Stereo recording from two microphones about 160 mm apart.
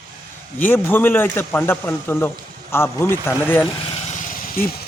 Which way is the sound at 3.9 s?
45° left (ahead or behind).